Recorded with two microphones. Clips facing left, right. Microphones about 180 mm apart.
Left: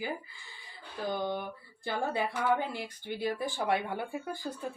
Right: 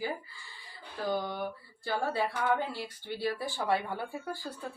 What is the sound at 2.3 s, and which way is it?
Speech, 15° left (ahead or behind).